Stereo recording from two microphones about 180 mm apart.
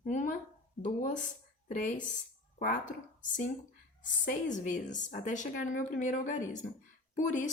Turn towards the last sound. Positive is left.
turn(degrees=45)  # may be behind; listen again after turning